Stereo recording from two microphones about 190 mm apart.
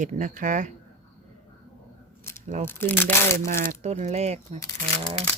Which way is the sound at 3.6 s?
40° right (ahead or behind).